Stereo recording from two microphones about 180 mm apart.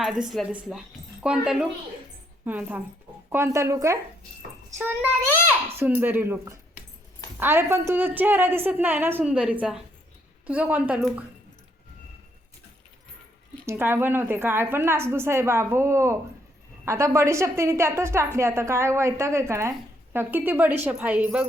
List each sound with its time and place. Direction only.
0.0 s a woman's voice: centre (ahead or behind)
5.7 s a woman's voice: 10° right (ahead or behind)
13.7 s a woman's voice: 15° right (ahead or behind)